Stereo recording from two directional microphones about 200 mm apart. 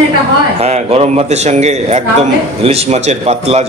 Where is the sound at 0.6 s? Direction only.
35° right (ahead or behind).